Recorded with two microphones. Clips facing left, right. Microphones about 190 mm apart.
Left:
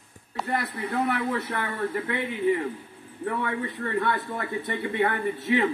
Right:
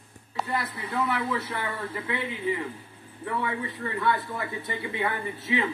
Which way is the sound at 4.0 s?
60° left (ahead or behind).